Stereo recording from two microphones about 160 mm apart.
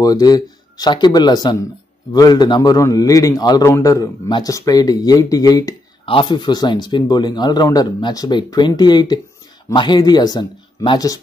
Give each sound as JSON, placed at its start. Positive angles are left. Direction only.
{"t": 0.0, "sound": "a man's voice", "side_deg": 25}